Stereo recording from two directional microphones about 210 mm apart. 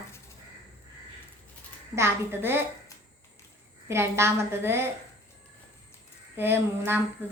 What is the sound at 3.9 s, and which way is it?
Speech, 10° right (ahead or behind).